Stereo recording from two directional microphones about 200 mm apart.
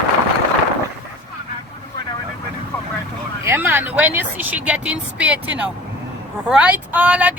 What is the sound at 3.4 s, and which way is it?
A woman's voice, 10° right (ahead or behind).